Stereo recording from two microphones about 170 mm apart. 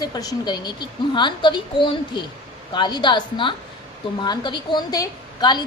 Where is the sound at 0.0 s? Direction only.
20° left (ahead or behind).